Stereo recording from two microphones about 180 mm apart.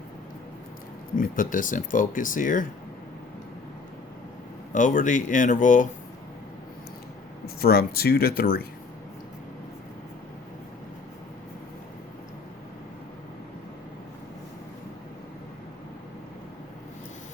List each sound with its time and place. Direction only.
1.1 s speech: 50° left (ahead or behind)
4.7 s speech: 45° left (ahead or behind)
7.4 s speech: 60° left (ahead or behind)